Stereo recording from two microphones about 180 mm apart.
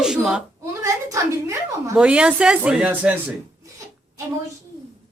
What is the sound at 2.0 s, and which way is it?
Speech, 5° right (ahead or behind).